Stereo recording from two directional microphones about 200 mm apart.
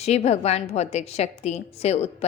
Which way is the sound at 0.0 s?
30° left (ahead or behind).